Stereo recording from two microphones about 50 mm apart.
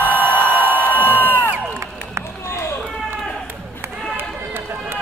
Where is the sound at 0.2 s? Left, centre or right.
Right.